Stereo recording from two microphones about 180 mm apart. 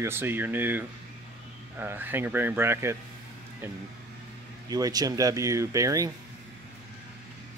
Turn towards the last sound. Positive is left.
turn(degrees=-20)  # may be behind; listen again after turning